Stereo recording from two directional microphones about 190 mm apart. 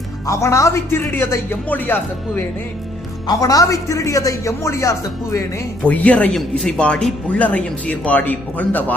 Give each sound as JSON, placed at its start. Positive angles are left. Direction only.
{"t": 0.3, "sound": "speech", "side_deg": 15}